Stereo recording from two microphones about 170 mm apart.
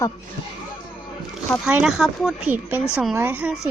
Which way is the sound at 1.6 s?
5° right (ahead or behind).